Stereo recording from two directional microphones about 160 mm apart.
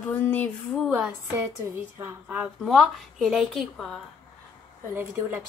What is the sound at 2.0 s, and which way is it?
Speech, 10° right (ahead or behind).